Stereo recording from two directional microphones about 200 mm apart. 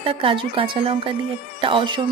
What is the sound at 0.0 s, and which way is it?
Speech, 25° right (ahead or behind).